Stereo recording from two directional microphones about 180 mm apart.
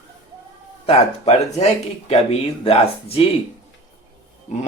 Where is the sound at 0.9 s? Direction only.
35° left (ahead or behind).